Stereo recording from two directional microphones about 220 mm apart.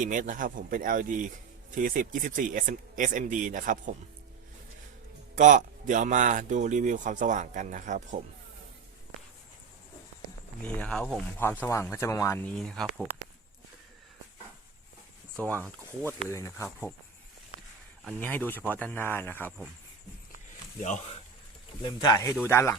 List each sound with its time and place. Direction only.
0.0 s a man's voice: 35° right (ahead or behind)
5.3 s a man's voice: 35° right (ahead or behind)
10.6 s speech: 5° left (ahead or behind)
15.5 s speech: 10° right (ahead or behind)
16.3 s speech: 15° left (ahead or behind)
18.0 s speech: 5° left (ahead or behind)
21.8 s speech: 20° left (ahead or behind)